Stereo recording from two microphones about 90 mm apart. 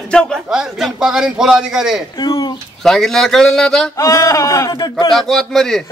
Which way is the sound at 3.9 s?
40° left (ahead or behind).